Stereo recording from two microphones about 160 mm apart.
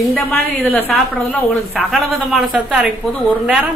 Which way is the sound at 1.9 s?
5° right (ahead or behind).